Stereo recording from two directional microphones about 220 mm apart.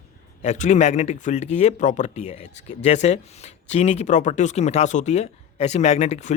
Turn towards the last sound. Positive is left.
turn(degrees=30)  # may be behind; listen again after turning